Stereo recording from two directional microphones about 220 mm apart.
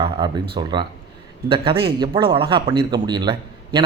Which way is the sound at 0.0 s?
25° right (ahead or behind).